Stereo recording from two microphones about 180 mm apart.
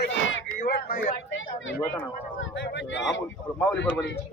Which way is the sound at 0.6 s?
50° left (ahead or behind).